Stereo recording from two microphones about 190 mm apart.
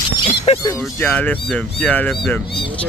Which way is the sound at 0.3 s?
35° left (ahead or behind).